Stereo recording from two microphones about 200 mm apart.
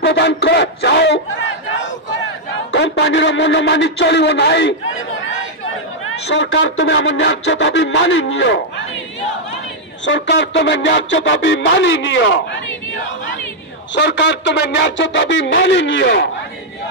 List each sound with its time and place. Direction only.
0.0 s speech: 55° left (ahead or behind)
2.7 s speech: 65° left (ahead or behind)
6.3 s speech: 65° left (ahead or behind)
10.0 s speech: 65° left (ahead or behind)
13.9 s speech: 60° left (ahead or behind)